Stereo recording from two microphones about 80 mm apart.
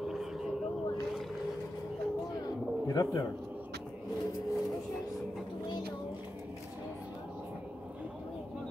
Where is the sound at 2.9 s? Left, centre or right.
Left.